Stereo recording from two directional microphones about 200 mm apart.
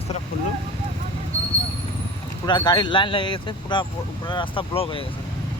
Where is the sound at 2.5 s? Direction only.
25° left (ahead or behind).